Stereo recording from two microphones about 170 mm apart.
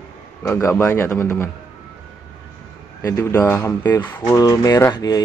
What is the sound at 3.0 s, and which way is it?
Speech, 15° left (ahead or behind).